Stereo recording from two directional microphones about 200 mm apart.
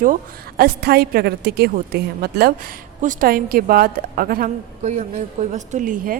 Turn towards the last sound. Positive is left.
turn(degrees=-40)  # may be behind; listen again after turning